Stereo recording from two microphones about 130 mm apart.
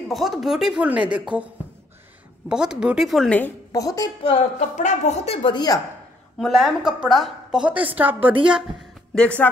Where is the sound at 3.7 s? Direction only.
30° left (ahead or behind).